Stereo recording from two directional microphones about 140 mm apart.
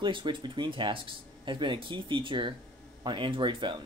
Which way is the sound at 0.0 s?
35° right (ahead or behind).